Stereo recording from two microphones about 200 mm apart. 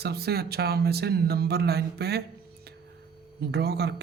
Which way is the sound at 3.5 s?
55° right (ahead or behind).